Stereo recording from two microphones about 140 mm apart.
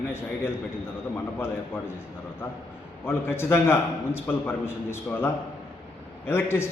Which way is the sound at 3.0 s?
15° left (ahead or behind).